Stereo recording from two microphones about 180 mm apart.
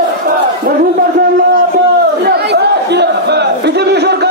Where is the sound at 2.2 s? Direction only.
65° right (ahead or behind).